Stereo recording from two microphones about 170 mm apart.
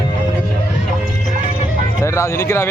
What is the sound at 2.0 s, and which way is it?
Speech, 15° left (ahead or behind).